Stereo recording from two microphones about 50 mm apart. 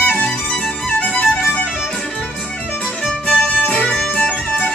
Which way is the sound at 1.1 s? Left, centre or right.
Left.